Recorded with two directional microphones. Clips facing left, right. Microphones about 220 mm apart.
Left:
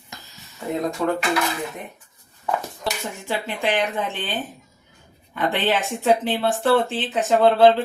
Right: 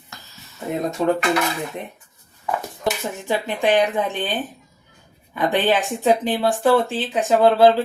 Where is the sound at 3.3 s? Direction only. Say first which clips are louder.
Right 5 dB; 15° right (ahead or behind).